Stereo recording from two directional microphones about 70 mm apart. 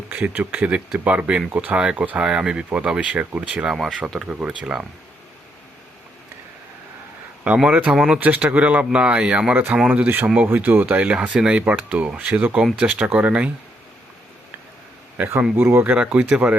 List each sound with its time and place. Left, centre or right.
0.1 s speech: right
1.8 s speech: centre
7.4 s speech: centre
7.9 s speech: centre
8.2 s speech: centre
9.9 s speech: right
10.2 s speech: centre
10.5 s speech: right
15.5 s speech: right
16.0 s speech: centre